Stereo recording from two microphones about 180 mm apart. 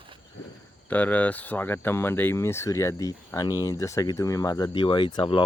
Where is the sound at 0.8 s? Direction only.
10° left (ahead or behind).